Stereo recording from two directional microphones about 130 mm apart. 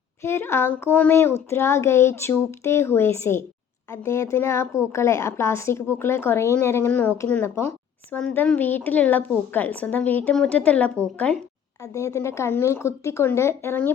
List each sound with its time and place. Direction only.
0.2 s a woman's voice: 20° left (ahead or behind)
11.9 s a woman's voice: 25° left (ahead or behind)